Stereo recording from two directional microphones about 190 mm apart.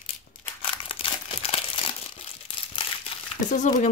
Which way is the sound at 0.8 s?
30° left (ahead or behind).